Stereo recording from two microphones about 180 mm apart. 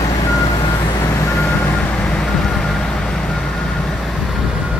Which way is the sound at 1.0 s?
15° left (ahead or behind).